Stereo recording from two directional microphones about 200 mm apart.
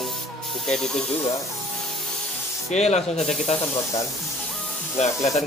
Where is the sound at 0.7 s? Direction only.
5° left (ahead or behind).